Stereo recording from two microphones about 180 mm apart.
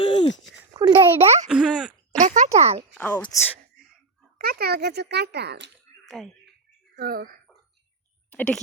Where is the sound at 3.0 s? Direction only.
10° left (ahead or behind).